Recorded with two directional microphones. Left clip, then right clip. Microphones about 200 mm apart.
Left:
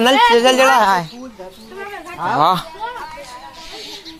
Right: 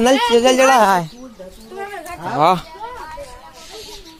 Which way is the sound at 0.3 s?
30° right (ahead or behind).